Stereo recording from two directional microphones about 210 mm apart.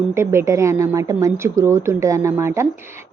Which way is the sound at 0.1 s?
10° right (ahead or behind).